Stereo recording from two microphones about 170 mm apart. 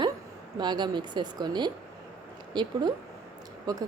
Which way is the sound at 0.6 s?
25° right (ahead or behind).